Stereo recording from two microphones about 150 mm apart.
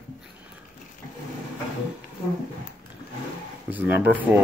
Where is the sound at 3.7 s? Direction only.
10° right (ahead or behind).